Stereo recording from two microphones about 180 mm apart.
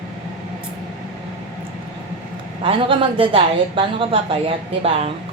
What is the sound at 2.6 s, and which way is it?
A woman's voice, 30° right (ahead or behind).